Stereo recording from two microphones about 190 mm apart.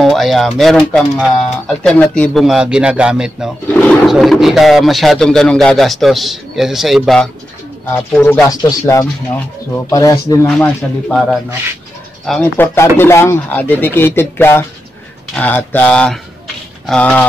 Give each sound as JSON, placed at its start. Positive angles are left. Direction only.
{"t": 0.0, "sound": "speech", "side_deg": 0}
{"t": 3.6, "sound": "speech", "side_deg": 5}
{"t": 10.6, "sound": "speech", "side_deg": 5}